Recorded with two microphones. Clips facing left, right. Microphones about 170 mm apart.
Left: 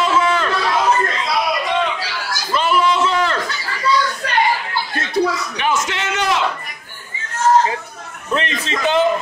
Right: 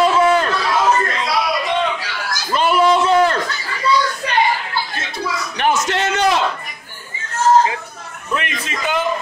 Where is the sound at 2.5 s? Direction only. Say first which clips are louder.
Right 2 dB; 45° right (ahead or behind).